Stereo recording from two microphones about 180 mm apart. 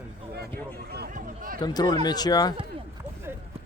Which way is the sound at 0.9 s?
65° right (ahead or behind).